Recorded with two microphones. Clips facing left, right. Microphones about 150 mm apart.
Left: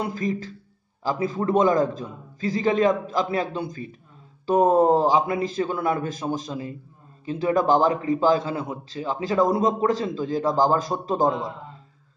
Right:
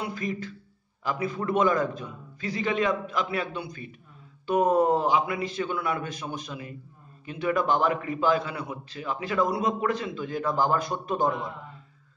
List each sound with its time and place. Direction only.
0.0 s a man's voice: 40° left (ahead or behind)